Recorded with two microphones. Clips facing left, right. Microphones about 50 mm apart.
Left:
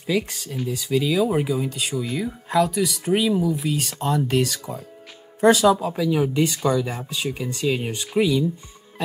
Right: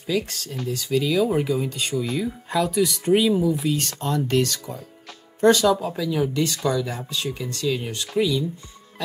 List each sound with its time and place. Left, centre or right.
0.0 s speech: centre
6.0 s speech: left